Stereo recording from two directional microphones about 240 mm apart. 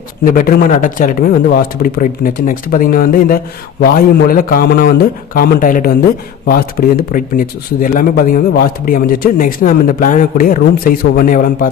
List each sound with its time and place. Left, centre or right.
0.3 s speech: left